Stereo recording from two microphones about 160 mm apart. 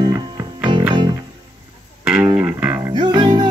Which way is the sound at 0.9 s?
30° right (ahead or behind).